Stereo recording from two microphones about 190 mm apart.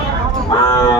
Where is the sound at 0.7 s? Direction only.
20° left (ahead or behind).